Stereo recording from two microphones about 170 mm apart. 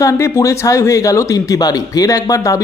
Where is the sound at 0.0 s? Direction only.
15° left (ahead or behind).